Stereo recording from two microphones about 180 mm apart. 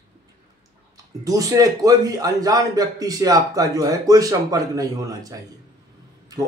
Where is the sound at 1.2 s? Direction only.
20° right (ahead or behind).